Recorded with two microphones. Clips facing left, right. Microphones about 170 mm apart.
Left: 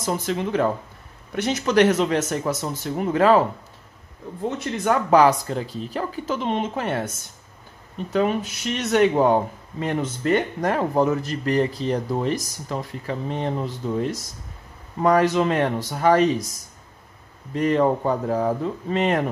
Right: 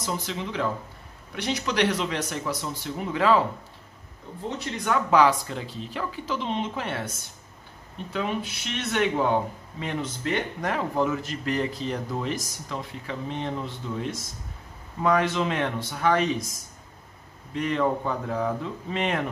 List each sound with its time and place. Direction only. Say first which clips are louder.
0.0 s speech: left 6 dB; 50° left (ahead or behind)
4.8 s speech: left 4 dB; 40° left (ahead or behind)
8.1 s speech: left 7 dB; 45° left (ahead or behind)
17.6 s speech: left 5 dB; 40° left (ahead or behind)